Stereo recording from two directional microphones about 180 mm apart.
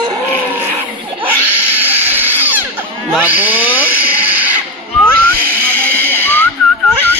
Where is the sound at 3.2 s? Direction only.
10° right (ahead or behind).